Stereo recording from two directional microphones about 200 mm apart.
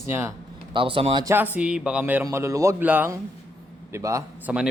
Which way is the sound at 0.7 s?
25° right (ahead or behind).